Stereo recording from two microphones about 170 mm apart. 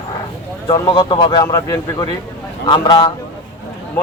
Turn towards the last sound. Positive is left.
turn(degrees=30)  # may be behind; listen again after turning